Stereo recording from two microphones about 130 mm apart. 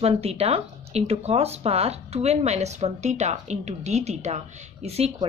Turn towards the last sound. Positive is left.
turn(degrees=-55)  # may be behind; listen again after turning